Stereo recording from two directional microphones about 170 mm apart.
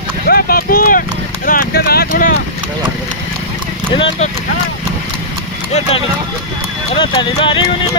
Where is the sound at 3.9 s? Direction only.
30° left (ahead or behind).